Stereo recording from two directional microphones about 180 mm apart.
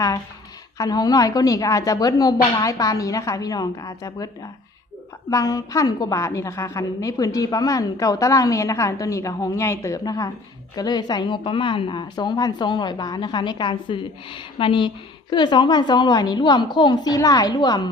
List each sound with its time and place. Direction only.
0.8 s a woman's voice: 20° left (ahead or behind)
5.3 s a woman's voice: 20° left (ahead or behind)